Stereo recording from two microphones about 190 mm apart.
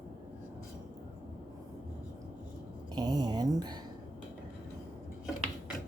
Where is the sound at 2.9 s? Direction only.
20° right (ahead or behind).